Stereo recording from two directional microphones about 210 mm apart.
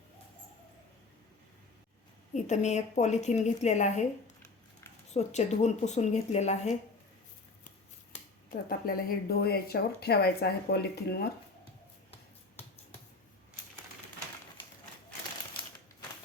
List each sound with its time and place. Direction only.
2.3 s a woman's voice: 35° left (ahead or behind)
5.1 s a woman's voice: 30° left (ahead or behind)
8.4 s speech: 45° left (ahead or behind)